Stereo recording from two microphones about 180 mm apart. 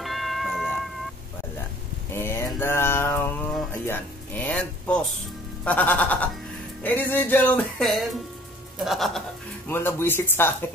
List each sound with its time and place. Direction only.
0.0 s cat: centre (ahead or behind)
2.1 s mantra: 15° left (ahead or behind)
3.7 s speech: 10° left (ahead or behind)
5.6 s music: 10° left (ahead or behind)
9.7 s music: 15° left (ahead or behind)